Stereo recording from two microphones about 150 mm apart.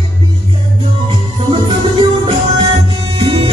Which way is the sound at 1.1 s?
35° right (ahead or behind).